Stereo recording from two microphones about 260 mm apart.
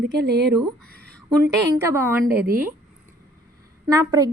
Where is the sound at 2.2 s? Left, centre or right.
Right.